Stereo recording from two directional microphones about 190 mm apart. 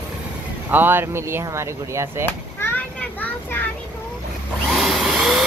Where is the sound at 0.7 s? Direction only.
10° right (ahead or behind).